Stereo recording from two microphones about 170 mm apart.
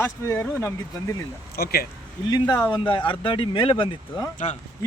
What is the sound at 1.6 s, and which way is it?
Speech, 65° left (ahead or behind).